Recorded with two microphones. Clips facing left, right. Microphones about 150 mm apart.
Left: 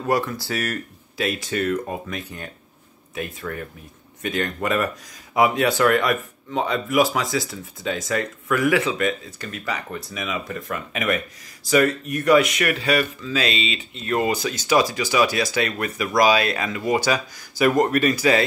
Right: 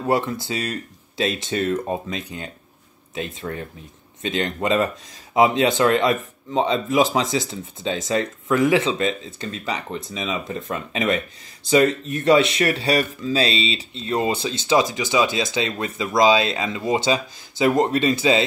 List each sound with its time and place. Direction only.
0.0 s speech: 25° right (ahead or behind)